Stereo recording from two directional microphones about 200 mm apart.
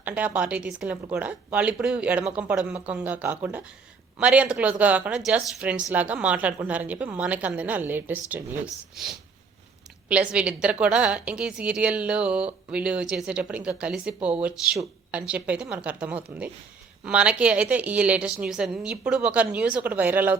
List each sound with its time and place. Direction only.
0.0 s a woman's voice: 5° right (ahead or behind)
10.1 s a woman's voice: 5° right (ahead or behind)